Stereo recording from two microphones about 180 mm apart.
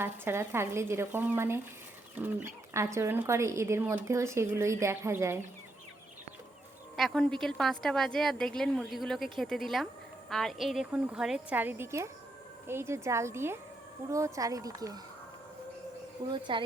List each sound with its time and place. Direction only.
0.0 s speech: 15° right (ahead or behind)
6.9 s a woman's voice: centre (ahead or behind); by 14.9 s 20° right (ahead or behind)
16.3 s speech: 25° right (ahead or behind)